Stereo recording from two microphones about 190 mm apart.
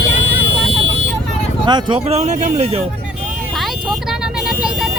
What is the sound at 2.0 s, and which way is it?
Speech, 35° right (ahead or behind).